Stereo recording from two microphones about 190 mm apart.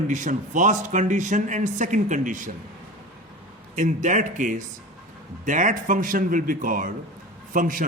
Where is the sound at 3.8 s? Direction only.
40° right (ahead or behind).